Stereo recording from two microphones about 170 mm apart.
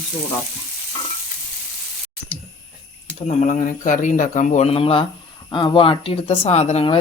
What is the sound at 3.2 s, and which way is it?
Speech, 45° left (ahead or behind).